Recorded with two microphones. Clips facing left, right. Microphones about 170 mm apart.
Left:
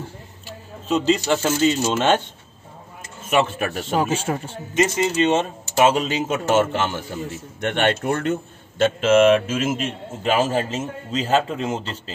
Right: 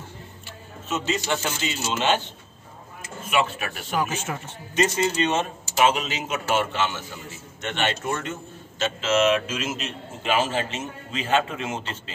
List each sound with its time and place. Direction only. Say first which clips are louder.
0.8 s speech: left 7 dB; 35° left (ahead or behind)
3.3 s a man's voice: left 5 dB; 45° left (ahead or behind)
3.9 s speech: left 4 dB; 30° left (ahead or behind)
4.7 s speech: left 3 dB; 20° left (ahead or behind)
6.5 s a man's voice: left 5 dB; 45° left (ahead or behind)